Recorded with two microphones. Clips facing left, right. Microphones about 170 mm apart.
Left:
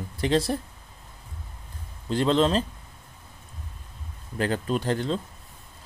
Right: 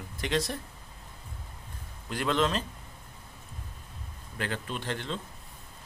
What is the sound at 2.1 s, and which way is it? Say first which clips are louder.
Speech: left 6 dB; 30° left (ahead or behind).